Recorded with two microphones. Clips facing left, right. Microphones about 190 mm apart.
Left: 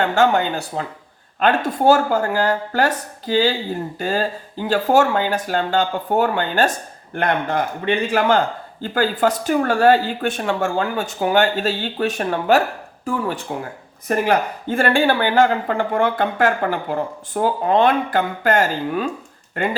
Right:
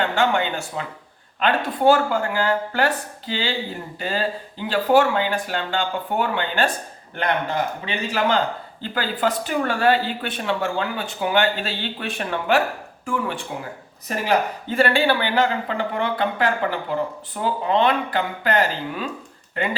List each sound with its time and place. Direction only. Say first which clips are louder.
0.0 s speech: left 4 dB; 45° left (ahead or behind)
7.2 s speech: left 3 dB; 55° left (ahead or behind)
14.1 s speech: left 3 dB; 50° left (ahead or behind)